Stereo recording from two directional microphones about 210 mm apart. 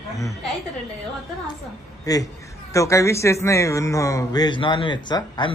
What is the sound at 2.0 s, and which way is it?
A man's voice, 15° left (ahead or behind).